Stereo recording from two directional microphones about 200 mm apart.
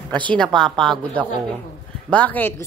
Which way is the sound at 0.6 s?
Centre (ahead or behind).